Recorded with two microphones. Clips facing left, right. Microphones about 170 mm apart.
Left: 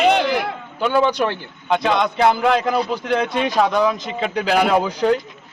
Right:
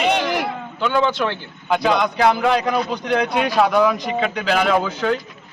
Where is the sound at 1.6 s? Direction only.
Centre (ahead or behind).